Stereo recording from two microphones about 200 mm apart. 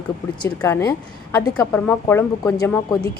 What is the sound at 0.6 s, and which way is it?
A woman's voice, 15° left (ahead or behind).